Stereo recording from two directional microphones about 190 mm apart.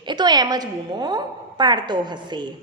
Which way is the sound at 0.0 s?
25° right (ahead or behind).